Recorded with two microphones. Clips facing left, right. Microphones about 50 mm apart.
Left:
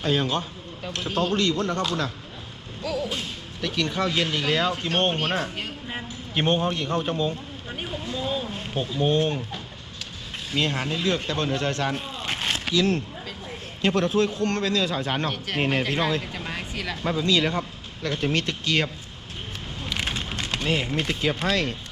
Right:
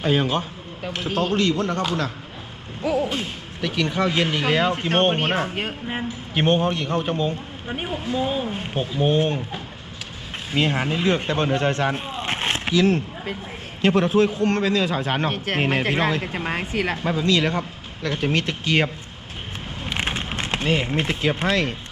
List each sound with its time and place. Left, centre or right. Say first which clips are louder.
0.0 s a man's voice: right 3 dB; centre
2.8 s a man's voice: right 6 dB; right
3.6 s a man's voice: right 3 dB; centre; by 5.5 s right
5.9 s a man's voice: right 4 dB; centre
15.3 s speech: right 3 dB; right
17.0 s a man's voice: even; centre
19.8 s a sound: right 3 dB; right
20.7 s a man's voice: right 3 dB; centre
20.9 s a man's voice: right 3 dB; right
21.5 s a man's voice: right 3 dB; centre